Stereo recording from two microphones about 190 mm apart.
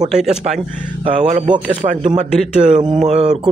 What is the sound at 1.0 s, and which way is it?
Speech, 35° right (ahead or behind).